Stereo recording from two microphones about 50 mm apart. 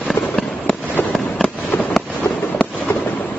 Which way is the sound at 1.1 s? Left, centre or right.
Centre.